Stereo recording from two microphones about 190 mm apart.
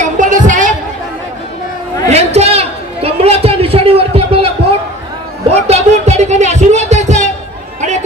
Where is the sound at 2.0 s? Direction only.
35° right (ahead or behind).